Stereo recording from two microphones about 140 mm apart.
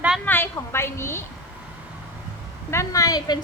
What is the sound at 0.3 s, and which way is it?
Speech, 15° left (ahead or behind).